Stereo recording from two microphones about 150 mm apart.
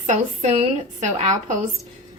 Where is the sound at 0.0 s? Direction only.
50° right (ahead or behind).